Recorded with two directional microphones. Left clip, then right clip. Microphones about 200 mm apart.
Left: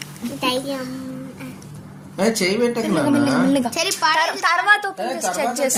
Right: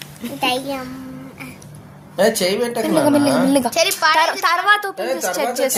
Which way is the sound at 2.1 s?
45° right (ahead or behind).